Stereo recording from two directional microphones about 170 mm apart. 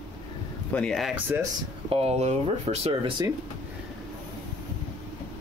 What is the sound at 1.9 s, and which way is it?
Speech, 35° right (ahead or behind).